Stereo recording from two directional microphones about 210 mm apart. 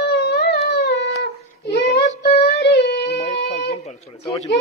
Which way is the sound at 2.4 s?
50° left (ahead or behind).